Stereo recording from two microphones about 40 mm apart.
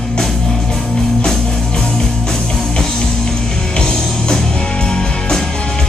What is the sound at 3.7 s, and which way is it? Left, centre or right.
Music, left.